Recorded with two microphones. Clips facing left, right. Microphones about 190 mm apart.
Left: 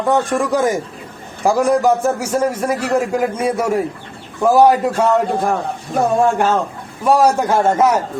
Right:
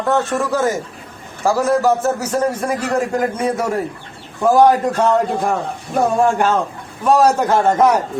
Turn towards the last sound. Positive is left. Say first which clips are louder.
# even
turn(degrees=10)  # may be behind; listen again after turning